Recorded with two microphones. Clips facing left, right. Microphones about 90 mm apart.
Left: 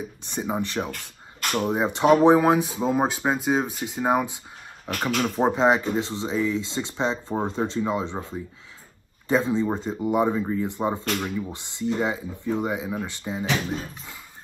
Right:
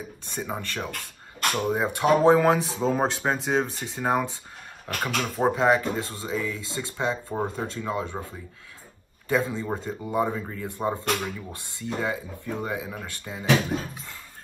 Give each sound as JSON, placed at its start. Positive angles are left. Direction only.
{"t": 0.2, "sound": "speech", "side_deg": 20}